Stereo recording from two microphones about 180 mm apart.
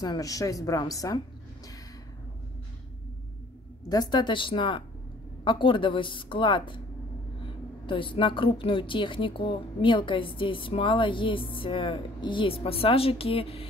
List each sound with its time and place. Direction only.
0.0 s a woman's voice: 20° left (ahead or behind)
3.9 s a woman's voice: 25° left (ahead or behind)
7.8 s a woman's voice: 30° left (ahead or behind)